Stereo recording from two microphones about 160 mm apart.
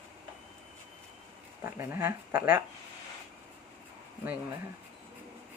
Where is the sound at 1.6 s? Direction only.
15° right (ahead or behind).